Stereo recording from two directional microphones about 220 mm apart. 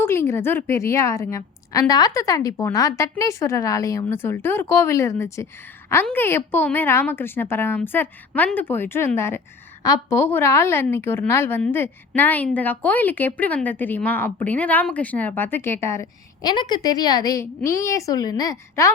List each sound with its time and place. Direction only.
0.0 s a woman's voice: 10° left (ahead or behind)